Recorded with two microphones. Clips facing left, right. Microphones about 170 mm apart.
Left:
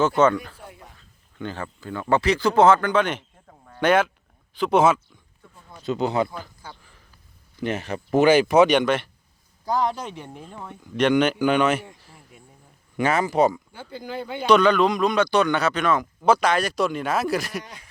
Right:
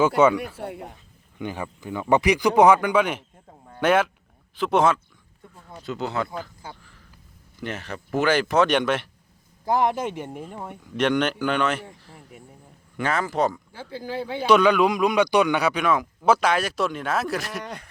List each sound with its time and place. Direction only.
0.2 s speech: 10° right (ahead or behind)
0.5 s a sound: 65° right (ahead or behind)
0.9 s speech: 15° right (ahead or behind); by 4.9 s centre (ahead or behind)
5.8 s speech: 20° left (ahead or behind)
7.6 s speech: 15° left (ahead or behind)
8.7 s speech: centre (ahead or behind)
9.7 s speech: 20° right (ahead or behind)
10.9 s speech: centre (ahead or behind)
13.0 s speech: 15° left (ahead or behind)
13.7 s speech: 5° right (ahead or behind)
17.6 s speech: 60° right (ahead or behind)